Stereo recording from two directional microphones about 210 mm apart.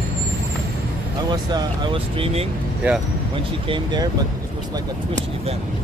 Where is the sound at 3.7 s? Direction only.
20° right (ahead or behind).